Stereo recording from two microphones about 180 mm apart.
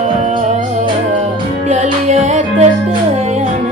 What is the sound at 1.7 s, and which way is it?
Music, 40° right (ahead or behind).